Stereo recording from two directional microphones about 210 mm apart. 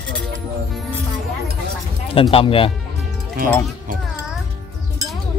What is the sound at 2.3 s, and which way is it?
Speech, 25° left (ahead or behind).